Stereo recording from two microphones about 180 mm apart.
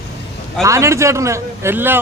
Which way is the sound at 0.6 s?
15° right (ahead or behind).